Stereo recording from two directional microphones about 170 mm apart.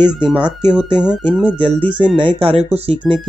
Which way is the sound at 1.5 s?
30° right (ahead or behind).